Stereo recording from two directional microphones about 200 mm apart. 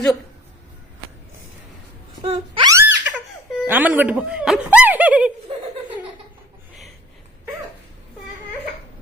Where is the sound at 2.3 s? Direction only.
30° right (ahead or behind).